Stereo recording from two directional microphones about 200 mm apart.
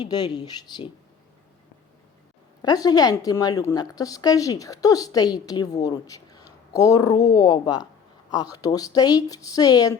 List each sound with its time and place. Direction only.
0.0 s a woman's voice: 20° left (ahead or behind)
2.6 s a woman's voice: 20° left (ahead or behind)